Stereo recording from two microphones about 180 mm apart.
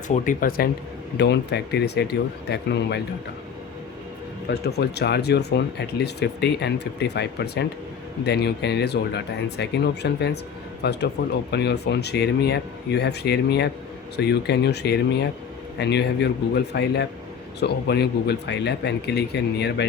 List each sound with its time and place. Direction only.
0.1 s speech: 50° left (ahead or behind)
1.1 s speech: 70° left (ahead or behind)
4.4 s speech: 65° left (ahead or behind)